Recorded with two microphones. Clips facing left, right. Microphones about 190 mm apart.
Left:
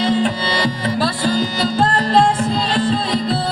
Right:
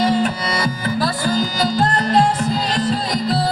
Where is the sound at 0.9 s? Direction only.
30° left (ahead or behind).